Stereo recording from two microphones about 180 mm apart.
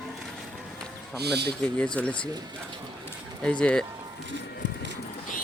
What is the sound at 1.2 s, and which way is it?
Speech, 65° right (ahead or behind).